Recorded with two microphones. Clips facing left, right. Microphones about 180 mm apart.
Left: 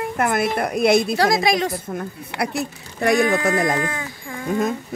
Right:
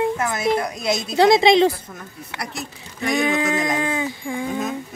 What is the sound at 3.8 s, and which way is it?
Speech, 25° right (ahead or behind).